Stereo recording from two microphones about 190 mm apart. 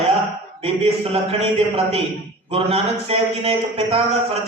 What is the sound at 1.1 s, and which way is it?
A man's voice, 30° right (ahead or behind).